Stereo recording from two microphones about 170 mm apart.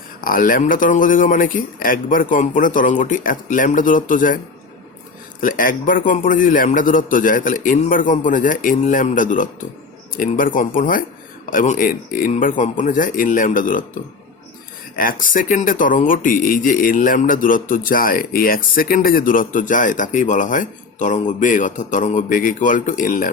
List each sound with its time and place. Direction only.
0.2 s speech: 55° left (ahead or behind)
5.4 s speech: 55° left (ahead or behind)
14.9 s speech: 55° left (ahead or behind)